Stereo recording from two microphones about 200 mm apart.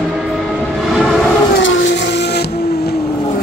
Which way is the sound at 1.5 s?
60° left (ahead or behind).